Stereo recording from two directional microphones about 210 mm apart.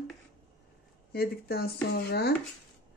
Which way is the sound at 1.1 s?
45° left (ahead or behind).